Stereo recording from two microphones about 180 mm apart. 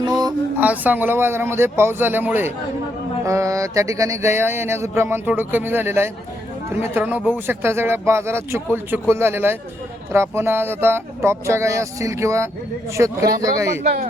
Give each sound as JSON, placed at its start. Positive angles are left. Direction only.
{"t": 0.0, "sound": "a sound", "side_deg": -20}
{"t": 0.6, "sound": "music", "side_deg": -10}
{"t": 13.8, "sound": "speech", "side_deg": -50}